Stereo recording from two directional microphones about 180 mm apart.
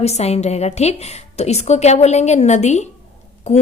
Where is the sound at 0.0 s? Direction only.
35° left (ahead or behind).